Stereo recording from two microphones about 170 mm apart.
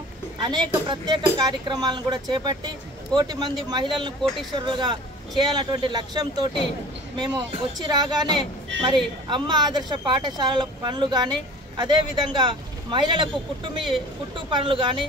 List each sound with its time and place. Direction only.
0.4 s a woman's voice: 25° right (ahead or behind)
14.3 s a woman's voice: 30° right (ahead or behind)